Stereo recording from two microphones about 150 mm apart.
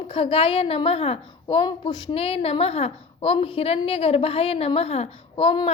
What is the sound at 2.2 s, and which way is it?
A woman's voice, 40° left (ahead or behind).